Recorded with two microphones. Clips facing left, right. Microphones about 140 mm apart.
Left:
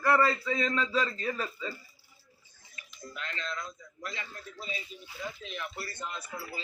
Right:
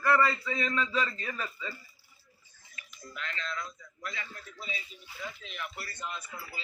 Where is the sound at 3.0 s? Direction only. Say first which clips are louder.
Even; 25° left (ahead or behind).